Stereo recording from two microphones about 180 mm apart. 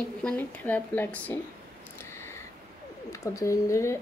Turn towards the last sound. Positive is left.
turn(degrees=15)  # may be behind; listen again after turning